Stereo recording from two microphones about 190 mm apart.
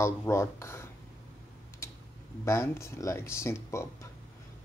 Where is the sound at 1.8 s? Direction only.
15° left (ahead or behind).